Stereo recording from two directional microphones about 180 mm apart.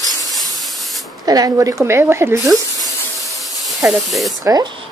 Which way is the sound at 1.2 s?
20° right (ahead or behind).